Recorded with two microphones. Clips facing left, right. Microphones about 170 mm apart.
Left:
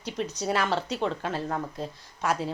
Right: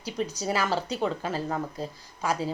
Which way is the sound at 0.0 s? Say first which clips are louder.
Even; 5° right (ahead or behind).